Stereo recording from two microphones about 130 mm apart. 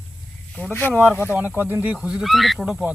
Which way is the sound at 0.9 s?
15° right (ahead or behind).